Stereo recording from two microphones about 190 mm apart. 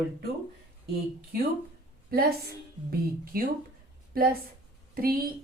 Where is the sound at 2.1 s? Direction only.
50° right (ahead or behind).